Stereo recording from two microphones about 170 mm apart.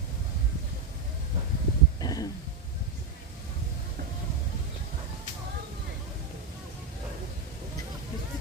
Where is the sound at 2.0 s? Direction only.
20° left (ahead or behind).